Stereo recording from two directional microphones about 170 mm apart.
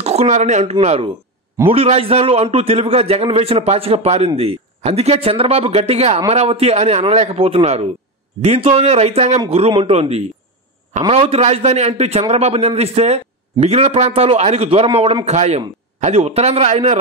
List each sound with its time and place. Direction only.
0.0 s speech: 40° right (ahead or behind)